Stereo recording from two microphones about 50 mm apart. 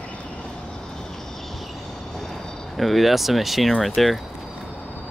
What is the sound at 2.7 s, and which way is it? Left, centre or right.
Speech, centre.